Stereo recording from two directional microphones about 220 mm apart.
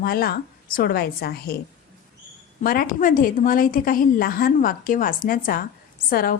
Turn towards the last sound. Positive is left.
turn(degrees=40)  # may be behind; listen again after turning